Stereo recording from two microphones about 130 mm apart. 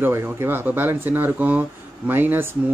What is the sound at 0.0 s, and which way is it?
Speech, 20° right (ahead or behind).